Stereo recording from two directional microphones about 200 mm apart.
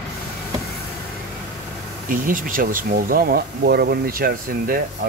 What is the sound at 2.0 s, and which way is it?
Speech, 45° right (ahead or behind).